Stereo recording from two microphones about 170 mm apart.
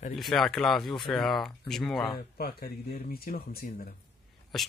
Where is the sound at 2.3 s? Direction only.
65° left (ahead or behind).